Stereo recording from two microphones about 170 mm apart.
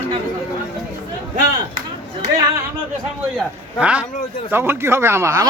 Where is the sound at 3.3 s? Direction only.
5° right (ahead or behind).